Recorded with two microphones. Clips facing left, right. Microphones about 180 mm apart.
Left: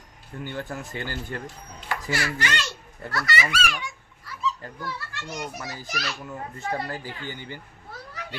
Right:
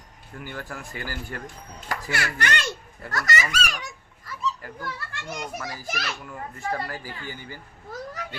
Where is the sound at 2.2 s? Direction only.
55° right (ahead or behind).